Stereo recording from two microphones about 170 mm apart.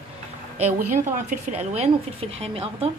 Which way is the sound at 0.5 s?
45° right (ahead or behind).